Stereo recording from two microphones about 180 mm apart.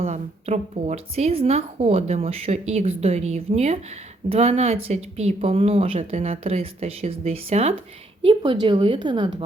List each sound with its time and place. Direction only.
0.0 s a woman's voice: 35° right (ahead or behind)